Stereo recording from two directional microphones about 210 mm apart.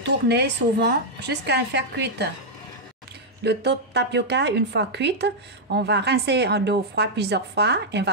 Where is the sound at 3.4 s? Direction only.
55° right (ahead or behind).